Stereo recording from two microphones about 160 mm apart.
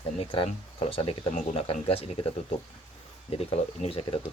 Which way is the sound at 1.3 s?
50° left (ahead or behind).